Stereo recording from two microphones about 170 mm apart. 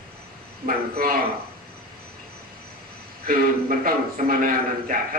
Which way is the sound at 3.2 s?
60° right (ahead or behind).